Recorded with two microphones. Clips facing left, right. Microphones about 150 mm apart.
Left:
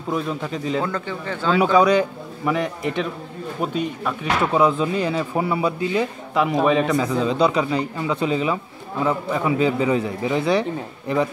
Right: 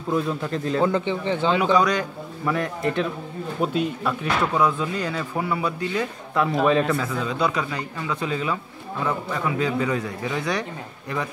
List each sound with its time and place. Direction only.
0.1 s a man's voice: 5° left (ahead or behind)
0.8 s speech: 20° right (ahead or behind)
1.6 s a man's voice: 10° left (ahead or behind)
3.6 s a man's voice: centre (ahead or behind)
4.6 s speech: 20° left (ahead or behind)